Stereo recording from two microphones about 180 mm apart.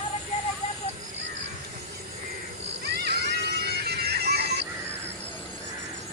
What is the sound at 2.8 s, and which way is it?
Music, 65° right (ahead or behind).